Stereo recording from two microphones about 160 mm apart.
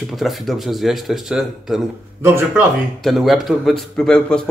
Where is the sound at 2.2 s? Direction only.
15° right (ahead or behind).